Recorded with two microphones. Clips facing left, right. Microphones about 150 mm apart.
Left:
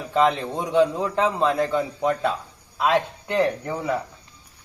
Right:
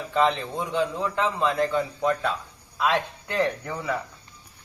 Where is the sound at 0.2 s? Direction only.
10° left (ahead or behind).